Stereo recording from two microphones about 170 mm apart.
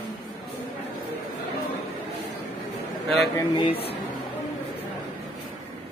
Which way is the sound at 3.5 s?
35° left (ahead or behind).